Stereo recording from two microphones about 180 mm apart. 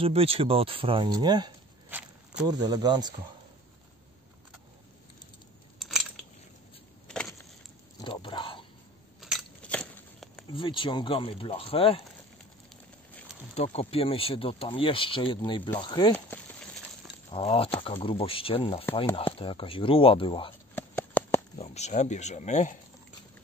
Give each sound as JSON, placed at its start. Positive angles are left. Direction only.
{"t": 0.0, "sound": "speech", "side_deg": -35}
{"t": 1.9, "sound": "walk", "side_deg": -10}
{"t": 2.4, "sound": "speech", "side_deg": -20}
{"t": 5.8, "sound": "a sound", "side_deg": 0}
{"t": 7.1, "sound": "keys jangling", "side_deg": 5}
{"t": 8.0, "sound": "a sound", "side_deg": 25}
{"t": 9.2, "sound": "biting", "side_deg": 0}
{"t": 10.5, "sound": "speech", "side_deg": 25}
{"t": 13.6, "sound": "speech", "side_deg": 35}
{"t": 17.3, "sound": "speech", "side_deg": 30}
{"t": 20.7, "sound": "a sound", "side_deg": 10}
{"t": 21.5, "sound": "speech", "side_deg": 35}